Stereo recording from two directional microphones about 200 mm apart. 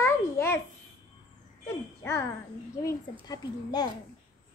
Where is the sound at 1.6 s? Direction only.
15° left (ahead or behind).